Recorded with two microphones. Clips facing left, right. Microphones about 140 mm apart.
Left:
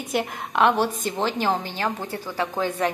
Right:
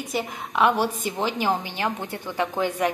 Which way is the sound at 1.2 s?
10° right (ahead or behind).